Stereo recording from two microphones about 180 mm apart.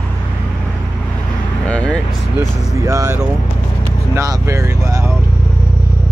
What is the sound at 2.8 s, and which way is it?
Speech, 15° right (ahead or behind).